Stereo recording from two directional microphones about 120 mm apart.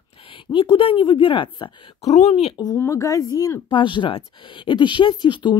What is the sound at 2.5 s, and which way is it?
Speech, 35° left (ahead or behind).